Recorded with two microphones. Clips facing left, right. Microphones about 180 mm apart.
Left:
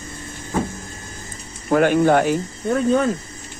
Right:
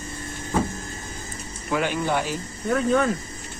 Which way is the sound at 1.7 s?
50° left (ahead or behind).